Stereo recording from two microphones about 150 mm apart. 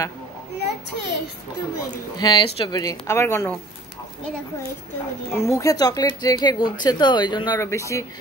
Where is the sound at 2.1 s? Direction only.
30° left (ahead or behind).